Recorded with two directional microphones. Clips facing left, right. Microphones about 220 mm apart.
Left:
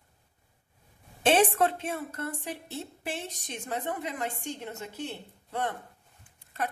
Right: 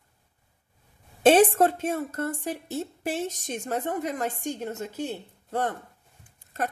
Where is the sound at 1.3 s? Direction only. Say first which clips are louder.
Right 6 dB; 40° right (ahead or behind).